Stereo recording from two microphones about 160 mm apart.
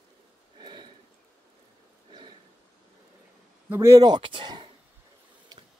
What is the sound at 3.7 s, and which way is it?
Speech, 15° right (ahead or behind).